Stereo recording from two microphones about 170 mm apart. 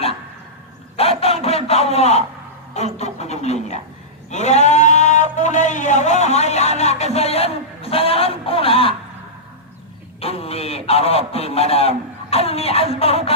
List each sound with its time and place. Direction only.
0.9 s a sound: 35° left (ahead or behind)
2.7 s sheep: 40° left (ahead or behind)
10.2 s speech: 35° left (ahead or behind)